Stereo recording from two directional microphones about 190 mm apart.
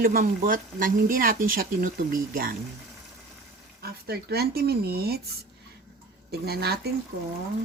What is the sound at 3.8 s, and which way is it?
Speech, 55° right (ahead or behind).